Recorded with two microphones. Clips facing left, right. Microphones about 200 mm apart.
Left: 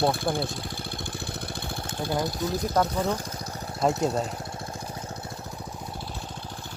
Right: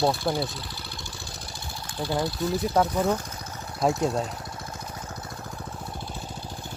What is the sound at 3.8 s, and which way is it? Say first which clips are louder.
Speech: even; 5° left (ahead or behind).